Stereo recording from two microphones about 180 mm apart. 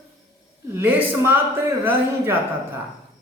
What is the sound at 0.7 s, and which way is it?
A man's voice, 10° right (ahead or behind).